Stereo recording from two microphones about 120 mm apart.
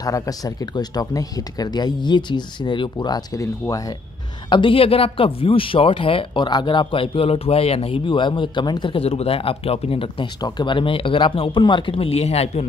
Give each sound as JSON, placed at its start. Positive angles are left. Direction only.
{"t": 0.0, "sound": "speech", "side_deg": 30}
{"t": 4.5, "sound": "a man's voice", "side_deg": 45}